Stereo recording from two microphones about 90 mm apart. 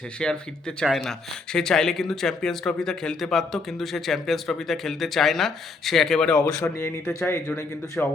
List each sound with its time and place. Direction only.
0.2 s speech: 10° left (ahead or behind)
6.5 s speech: 30° left (ahead or behind)